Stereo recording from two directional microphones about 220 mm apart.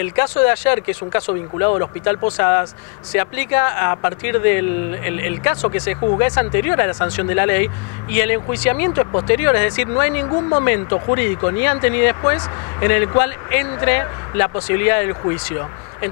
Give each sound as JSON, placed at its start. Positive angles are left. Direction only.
{"t": 0.0, "sound": "speech", "side_deg": 15}
{"t": 1.7, "sound": "speech", "side_deg": 25}